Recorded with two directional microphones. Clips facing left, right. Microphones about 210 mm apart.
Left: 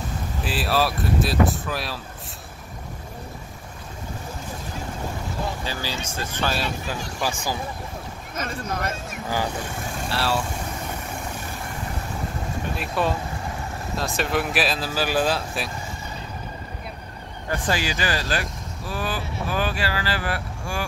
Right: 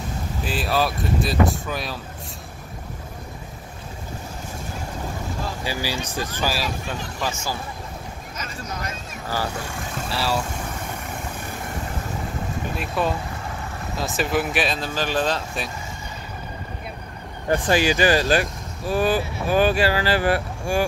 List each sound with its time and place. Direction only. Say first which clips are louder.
0.5 s speech: even; centre (ahead or behind)
5.6 s speech: right 3 dB; 10° right (ahead or behind)
7.2 s speech: left 1 dB; 15° left (ahead or behind)
8.4 s speech: left 5 dB; 55° left (ahead or behind)
10.0 s speech: even; centre (ahead or behind)
12.7 s speech: even; centre (ahead or behind)
17.5 s speech: right 6 dB; 15° right (ahead or behind)